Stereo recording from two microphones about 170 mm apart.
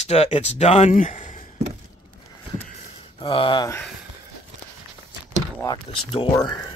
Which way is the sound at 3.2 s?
30° left (ahead or behind).